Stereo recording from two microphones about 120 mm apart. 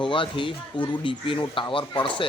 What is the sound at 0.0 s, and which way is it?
A man's voice, 45° left (ahead or behind).